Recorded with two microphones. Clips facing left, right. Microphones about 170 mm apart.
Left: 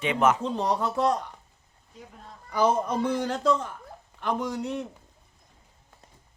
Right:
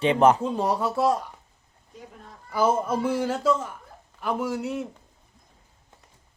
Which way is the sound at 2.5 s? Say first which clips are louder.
Right 1 dB; 5° right (ahead or behind).